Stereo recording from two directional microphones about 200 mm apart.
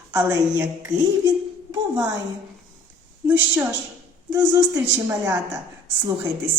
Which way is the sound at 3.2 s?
10° right (ahead or behind).